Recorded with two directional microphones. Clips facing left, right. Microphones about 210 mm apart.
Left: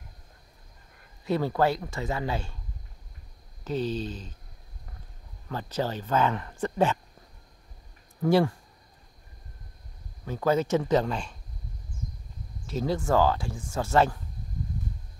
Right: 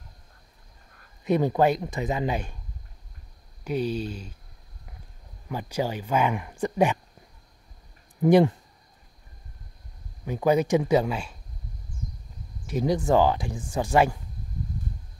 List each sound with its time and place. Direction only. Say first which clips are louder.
1.2 s speech: right 3 dB; 20° right (ahead or behind)
3.6 s speech: right 2 dB; 10° right (ahead or behind)
5.5 s speech: right 2 dB; 10° right (ahead or behind)
8.2 s speech: right 4 dB; 20° right (ahead or behind)
10.2 s speech: right 3 dB; 15° right (ahead or behind)
12.6 s speech: right 4 dB; 15° right (ahead or behind)